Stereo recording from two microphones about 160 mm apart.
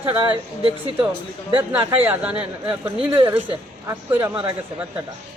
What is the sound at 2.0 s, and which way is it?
A man's voice, 10° right (ahead or behind).